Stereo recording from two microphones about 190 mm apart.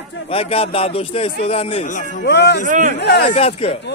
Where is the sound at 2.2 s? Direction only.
60° left (ahead or behind).